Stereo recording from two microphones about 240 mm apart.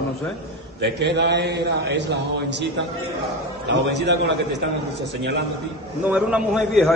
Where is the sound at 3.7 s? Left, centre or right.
Right.